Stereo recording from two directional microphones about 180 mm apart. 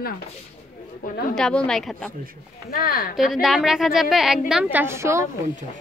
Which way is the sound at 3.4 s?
Centre (ahead or behind).